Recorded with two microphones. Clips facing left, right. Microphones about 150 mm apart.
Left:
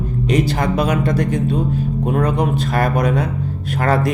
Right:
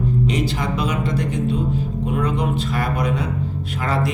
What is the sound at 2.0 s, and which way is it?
Speech, 50° left (ahead or behind).